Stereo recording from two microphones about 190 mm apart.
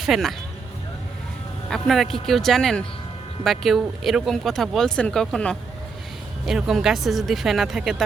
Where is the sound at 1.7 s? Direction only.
Centre (ahead or behind).